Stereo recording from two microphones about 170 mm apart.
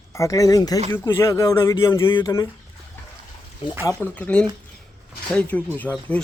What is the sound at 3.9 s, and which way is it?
Speech, 10° left (ahead or behind).